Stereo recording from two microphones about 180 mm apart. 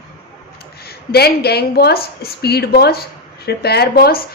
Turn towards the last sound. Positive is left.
turn(degrees=55)  # may be behind; listen again after turning